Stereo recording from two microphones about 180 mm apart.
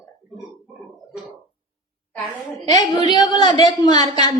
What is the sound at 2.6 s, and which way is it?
A woman's voice, 20° left (ahead or behind).